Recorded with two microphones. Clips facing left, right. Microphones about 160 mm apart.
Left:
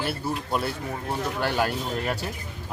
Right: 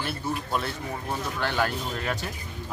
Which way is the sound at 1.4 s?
10° left (ahead or behind).